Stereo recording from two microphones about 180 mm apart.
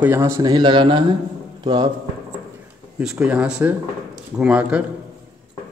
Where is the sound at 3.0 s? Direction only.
5° right (ahead or behind).